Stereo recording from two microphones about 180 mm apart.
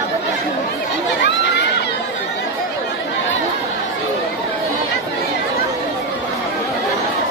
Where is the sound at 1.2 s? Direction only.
70° left (ahead or behind).